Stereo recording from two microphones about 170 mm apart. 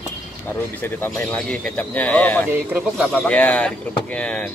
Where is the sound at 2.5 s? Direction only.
5° right (ahead or behind).